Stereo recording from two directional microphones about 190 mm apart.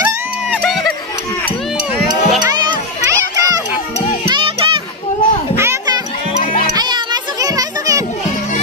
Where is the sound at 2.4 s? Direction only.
20° right (ahead or behind).